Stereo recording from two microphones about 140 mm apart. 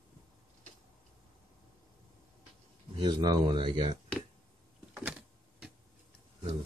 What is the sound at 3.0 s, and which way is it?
Speech, 35° right (ahead or behind).